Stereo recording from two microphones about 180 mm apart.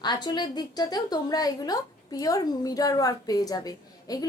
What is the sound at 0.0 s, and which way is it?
A woman's voice, 25° left (ahead or behind).